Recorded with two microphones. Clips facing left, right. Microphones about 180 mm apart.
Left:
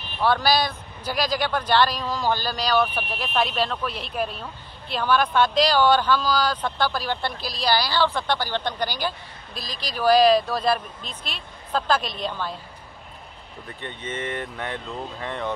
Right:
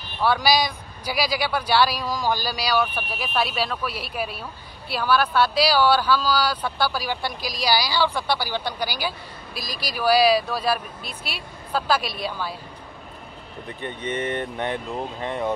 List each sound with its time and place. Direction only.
0.2 s a woman's voice: 10° right (ahead or behind)
13.7 s a woman's voice: 15° right (ahead or behind)
14.1 s speech: 35° right (ahead or behind)
14.9 s a woman's voice: 15° right (ahead or behind)